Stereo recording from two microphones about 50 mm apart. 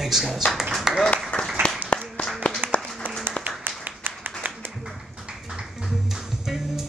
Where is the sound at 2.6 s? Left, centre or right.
Right.